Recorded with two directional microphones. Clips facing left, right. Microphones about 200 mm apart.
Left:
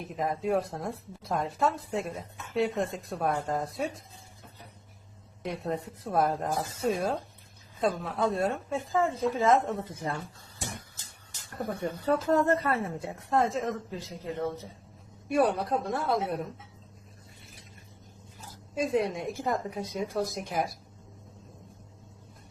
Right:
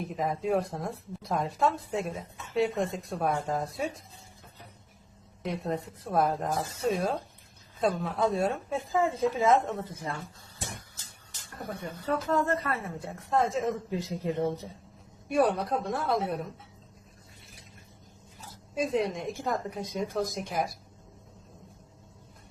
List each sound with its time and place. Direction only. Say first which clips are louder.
0.0 s a woman's voice: even; centre (ahead or behind)
5.4 s a woman's voice: right 1 dB; centre (ahead or behind)
9.8 s speech: left 2 dB; 25° left (ahead or behind)
11.8 s speech: left 3 dB; 40° left (ahead or behind)
13.3 s a woman's voice: even; centre (ahead or behind)
13.7 s speech: right 5 dB; 15° right (ahead or behind)
15.3 s a woman's voice: even; centre (ahead or behind)
18.7 s a woman's voice: left 1 dB; centre (ahead or behind)